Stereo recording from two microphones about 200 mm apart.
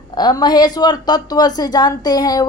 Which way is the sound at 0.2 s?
20° left (ahead or behind).